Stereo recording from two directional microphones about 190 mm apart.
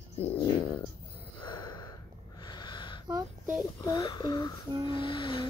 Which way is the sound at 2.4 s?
20° left (ahead or behind).